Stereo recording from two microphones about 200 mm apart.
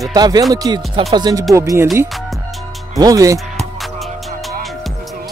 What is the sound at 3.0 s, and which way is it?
Speech, 15° right (ahead or behind).